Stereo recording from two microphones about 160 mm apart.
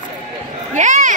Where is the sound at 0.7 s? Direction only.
50° right (ahead or behind).